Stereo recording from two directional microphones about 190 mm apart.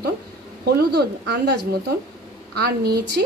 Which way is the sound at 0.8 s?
55° right (ahead or behind).